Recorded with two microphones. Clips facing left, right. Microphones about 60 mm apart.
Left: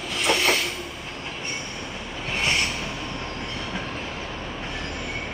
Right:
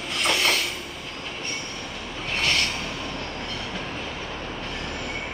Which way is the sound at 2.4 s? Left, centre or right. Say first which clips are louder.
Even; left.